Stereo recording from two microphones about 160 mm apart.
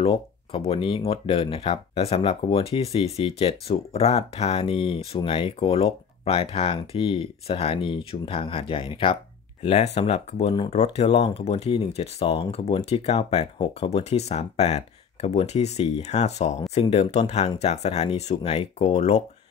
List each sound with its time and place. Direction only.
0.0 s speech: 40° left (ahead or behind)